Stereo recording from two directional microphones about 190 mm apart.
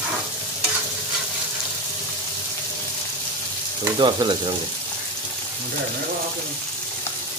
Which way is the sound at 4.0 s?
25° right (ahead or behind).